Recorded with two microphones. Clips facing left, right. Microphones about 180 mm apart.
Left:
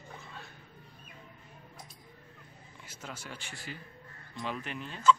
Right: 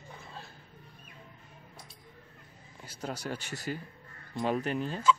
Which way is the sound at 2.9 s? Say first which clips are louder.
Right 8 dB; 35° right (ahead or behind).